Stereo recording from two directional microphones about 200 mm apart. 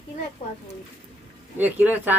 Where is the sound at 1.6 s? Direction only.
10° right (ahead or behind).